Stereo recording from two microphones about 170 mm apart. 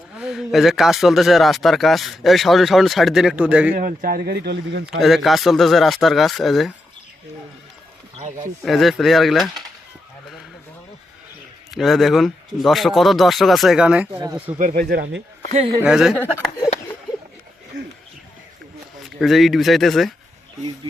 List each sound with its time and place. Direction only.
0.2 s speech: centre (ahead or behind)
3.8 s speech: 55° right (ahead or behind); by 4.9 s 75° right (ahead or behind)
4.9 s speech: centre (ahead or behind)
8.6 s speech: centre (ahead or behind)
11.7 s speech: centre (ahead or behind)
14.6 s speech: 60° right (ahead or behind); by 15.2 s 80° right
15.8 s speech: 5° right (ahead or behind)
19.2 s speech: centre (ahead or behind)